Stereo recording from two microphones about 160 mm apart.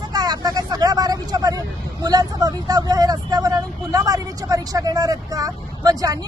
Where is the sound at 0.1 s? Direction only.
25° right (ahead or behind).